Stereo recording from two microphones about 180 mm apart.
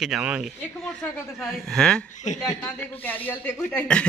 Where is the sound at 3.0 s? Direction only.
10° left (ahead or behind).